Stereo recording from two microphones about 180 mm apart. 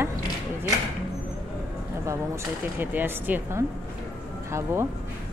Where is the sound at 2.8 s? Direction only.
10° right (ahead or behind).